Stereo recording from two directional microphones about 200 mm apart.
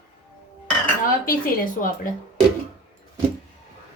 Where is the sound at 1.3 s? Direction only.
45° left (ahead or behind).